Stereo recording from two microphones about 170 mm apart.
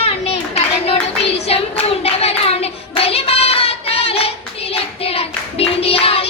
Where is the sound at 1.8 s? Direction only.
35° left (ahead or behind).